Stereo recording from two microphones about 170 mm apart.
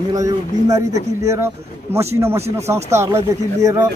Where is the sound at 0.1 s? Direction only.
20° right (ahead or behind).